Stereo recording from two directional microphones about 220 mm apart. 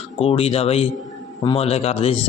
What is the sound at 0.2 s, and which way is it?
A man's voice, 25° left (ahead or behind).